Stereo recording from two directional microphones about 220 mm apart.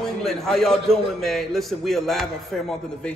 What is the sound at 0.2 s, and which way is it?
A man's voice, centre (ahead or behind).